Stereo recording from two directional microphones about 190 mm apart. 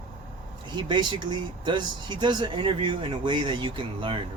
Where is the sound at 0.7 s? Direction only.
25° right (ahead or behind).